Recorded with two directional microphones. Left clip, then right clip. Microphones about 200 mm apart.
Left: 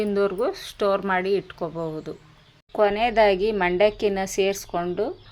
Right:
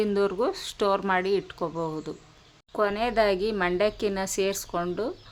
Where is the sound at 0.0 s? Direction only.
5° right (ahead or behind).